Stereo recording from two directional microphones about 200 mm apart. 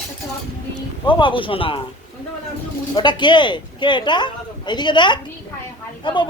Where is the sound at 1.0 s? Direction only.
25° left (ahead or behind).